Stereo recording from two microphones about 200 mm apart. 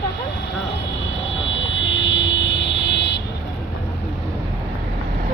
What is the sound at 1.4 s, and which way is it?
Vehicle, 70° left (ahead or behind).